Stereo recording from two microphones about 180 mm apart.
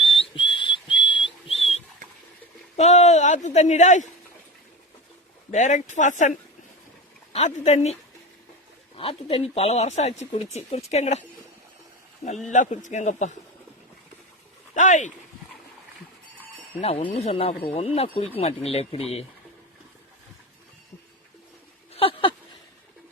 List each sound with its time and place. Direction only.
0.0 s whistle: 30° left (ahead or behind)
2.7 s speech: 40° left (ahead or behind)
5.5 s speech: 40° left (ahead or behind)
7.3 s speech: 40° left (ahead or behind)
9.0 s speech: 35° left (ahead or behind)
12.5 s speech: 40° left (ahead or behind)
14.8 s speech: 40° left (ahead or behind)
16.8 s speech: 35° left (ahead or behind)
21.9 s a sound: 30° left (ahead or behind)